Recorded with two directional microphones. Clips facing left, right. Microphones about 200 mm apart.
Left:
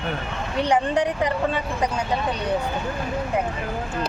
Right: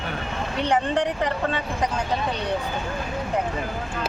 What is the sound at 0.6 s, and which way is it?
Speech, 10° left (ahead or behind).